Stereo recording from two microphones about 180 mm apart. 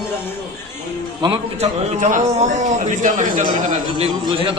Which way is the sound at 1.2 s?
30° right (ahead or behind).